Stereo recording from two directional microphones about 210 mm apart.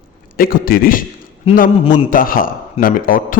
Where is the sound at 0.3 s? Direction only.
45° left (ahead or behind).